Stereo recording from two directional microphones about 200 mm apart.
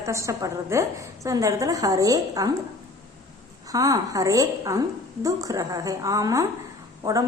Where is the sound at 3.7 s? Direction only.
15° right (ahead or behind).